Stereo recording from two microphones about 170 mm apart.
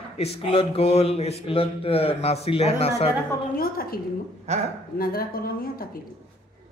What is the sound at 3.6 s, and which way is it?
Speech, 60° left (ahead or behind).